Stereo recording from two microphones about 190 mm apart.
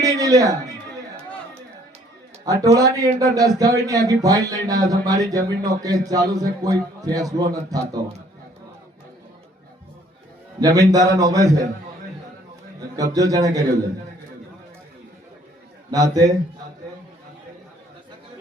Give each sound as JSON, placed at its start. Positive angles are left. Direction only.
{"t": 0.0, "sound": "speech", "side_deg": -20}
{"t": 2.4, "sound": "a man's voice", "side_deg": -20}
{"t": 10.6, "sound": "a man's voice", "side_deg": -20}
{"t": 13.0, "sound": "a man's voice", "side_deg": -20}
{"t": 15.9, "sound": "a man's voice", "side_deg": -20}